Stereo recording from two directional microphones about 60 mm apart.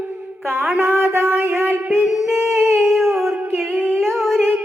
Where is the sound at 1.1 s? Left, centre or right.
Right.